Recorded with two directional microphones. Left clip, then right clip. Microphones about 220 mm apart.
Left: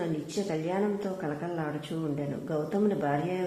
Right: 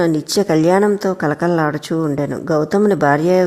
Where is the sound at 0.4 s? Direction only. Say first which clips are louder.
Right 17 dB; 45° right (ahead or behind).